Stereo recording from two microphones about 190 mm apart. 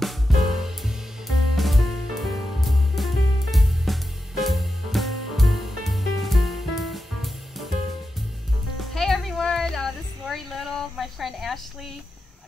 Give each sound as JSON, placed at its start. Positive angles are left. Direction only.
{"t": 0.0, "sound": "music", "side_deg": 0}
{"t": 8.7, "sound": "music", "side_deg": 0}